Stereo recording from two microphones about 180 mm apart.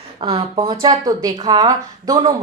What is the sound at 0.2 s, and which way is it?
A woman's voice, 30° right (ahead or behind).